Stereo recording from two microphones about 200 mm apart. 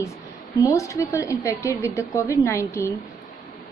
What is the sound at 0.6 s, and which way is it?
A woman's voice, 15° left (ahead or behind).